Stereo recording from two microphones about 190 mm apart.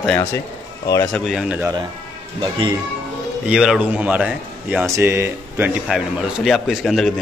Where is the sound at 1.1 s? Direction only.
Centre (ahead or behind).